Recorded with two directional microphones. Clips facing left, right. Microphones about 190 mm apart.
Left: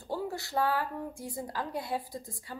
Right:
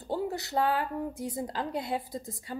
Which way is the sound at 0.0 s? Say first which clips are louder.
Right 3 dB; 20° right (ahead or behind).